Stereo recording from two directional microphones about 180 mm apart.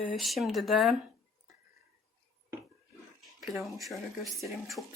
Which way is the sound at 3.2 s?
Centre (ahead or behind).